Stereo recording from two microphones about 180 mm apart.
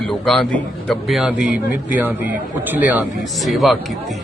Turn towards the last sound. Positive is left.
turn(degrees=0)  # may be behind; listen again after turning